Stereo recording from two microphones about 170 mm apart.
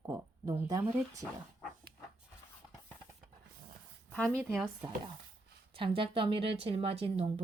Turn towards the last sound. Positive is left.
turn(degrees=-35)  # may be behind; listen again after turning